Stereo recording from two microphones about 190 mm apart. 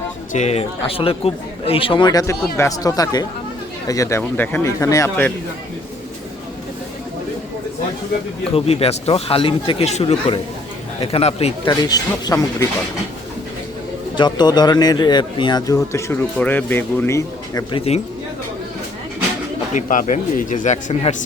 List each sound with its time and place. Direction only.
0.3 s a man's voice: 35° left (ahead or behind); by 5.1 s 15° left (ahead or behind)
8.5 s speech: 30° left (ahead or behind)
11.7 s a man's voice: 20° left (ahead or behind)
14.2 s a man's voice: 20° left (ahead or behind)
19.7 s speech: 45° left (ahead or behind)